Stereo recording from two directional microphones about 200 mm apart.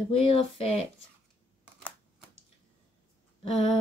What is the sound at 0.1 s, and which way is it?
Speech, 30° left (ahead or behind).